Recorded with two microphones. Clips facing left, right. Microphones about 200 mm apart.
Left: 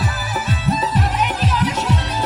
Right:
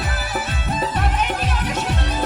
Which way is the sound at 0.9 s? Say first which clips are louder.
Left 2 dB; 50° right (ahead or behind).